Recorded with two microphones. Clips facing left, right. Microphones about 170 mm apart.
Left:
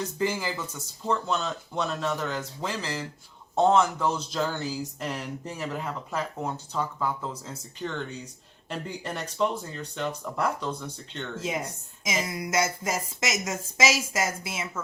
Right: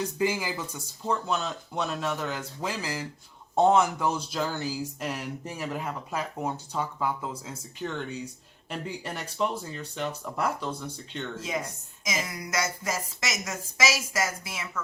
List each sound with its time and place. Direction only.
0.2 s speech: 10° right (ahead or behind)
11.3 s speech: 25° left (ahead or behind)